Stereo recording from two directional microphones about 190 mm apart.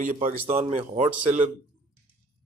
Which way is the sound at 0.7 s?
35° right (ahead or behind).